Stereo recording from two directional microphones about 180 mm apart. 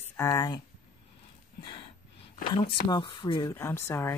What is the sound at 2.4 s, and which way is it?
Speech, 30° left (ahead or behind).